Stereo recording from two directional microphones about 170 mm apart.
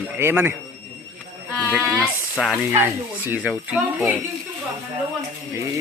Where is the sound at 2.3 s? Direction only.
Centre (ahead or behind).